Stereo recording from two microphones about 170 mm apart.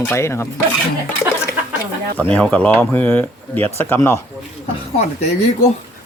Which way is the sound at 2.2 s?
10° left (ahead or behind).